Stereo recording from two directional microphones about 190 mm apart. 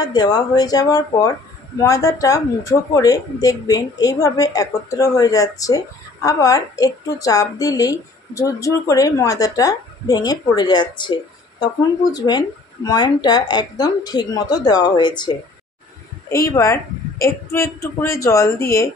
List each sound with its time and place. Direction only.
0.0 s a woman's voice: 20° left (ahead or behind)